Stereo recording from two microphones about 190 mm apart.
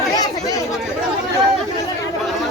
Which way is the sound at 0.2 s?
20° left (ahead or behind).